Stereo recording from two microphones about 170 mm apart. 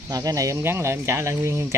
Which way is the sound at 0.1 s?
20° right (ahead or behind).